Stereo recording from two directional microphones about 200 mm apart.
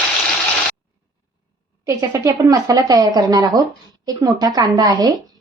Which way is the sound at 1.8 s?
15° right (ahead or behind).